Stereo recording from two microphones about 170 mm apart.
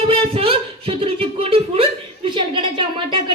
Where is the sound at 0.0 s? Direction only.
35° right (ahead or behind).